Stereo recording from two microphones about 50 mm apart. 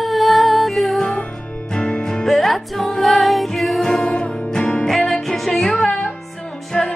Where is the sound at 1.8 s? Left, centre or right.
Centre.